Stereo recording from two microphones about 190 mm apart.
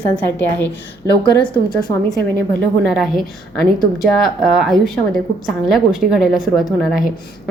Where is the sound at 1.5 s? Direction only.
20° left (ahead or behind).